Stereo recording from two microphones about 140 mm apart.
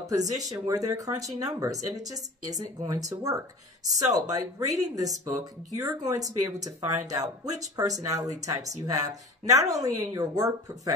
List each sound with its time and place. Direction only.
0.0 s speech: 25° right (ahead or behind)